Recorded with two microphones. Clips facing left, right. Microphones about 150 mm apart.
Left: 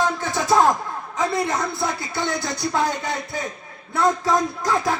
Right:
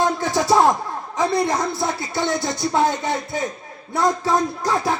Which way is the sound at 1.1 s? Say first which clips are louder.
Right 3 dB; 30° right (ahead or behind).